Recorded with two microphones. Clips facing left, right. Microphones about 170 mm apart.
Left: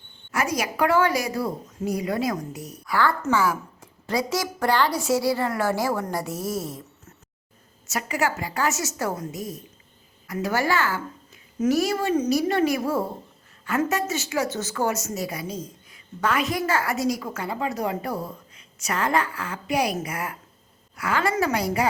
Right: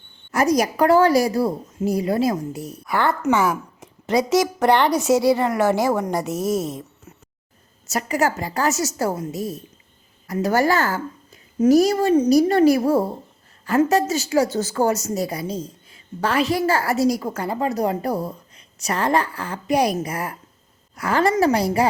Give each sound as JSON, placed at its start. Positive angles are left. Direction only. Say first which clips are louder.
{"t": 0.3, "sound": "a woman's voice", "louder": "right 7 dB", "side_deg": -40}
{"t": 7.9, "sound": "a woman's voice", "louder": "right 4 dB", "side_deg": -40}